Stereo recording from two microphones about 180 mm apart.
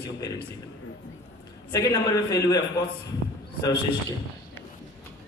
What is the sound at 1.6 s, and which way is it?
Speech, 15° left (ahead or behind).